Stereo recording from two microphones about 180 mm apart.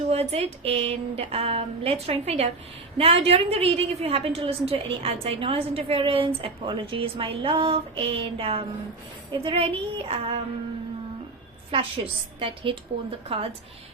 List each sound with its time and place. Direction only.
0.1 s a woman's voice: 35° right (ahead or behind)
11.7 s a woman's voice: 30° right (ahead or behind)